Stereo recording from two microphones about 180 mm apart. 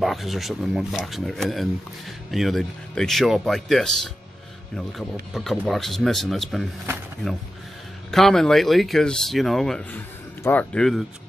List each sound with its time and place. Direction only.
0.0 s speech: centre (ahead or behind)
8.1 s speech: centre (ahead or behind)